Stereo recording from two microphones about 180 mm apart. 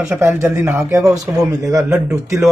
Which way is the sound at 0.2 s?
15° right (ahead or behind).